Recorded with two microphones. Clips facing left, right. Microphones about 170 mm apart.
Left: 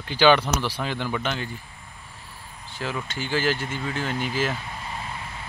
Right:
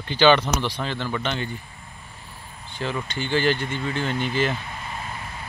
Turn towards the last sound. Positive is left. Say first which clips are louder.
# right 2 dB
turn(degrees=5)  # may be behind; listen again after turning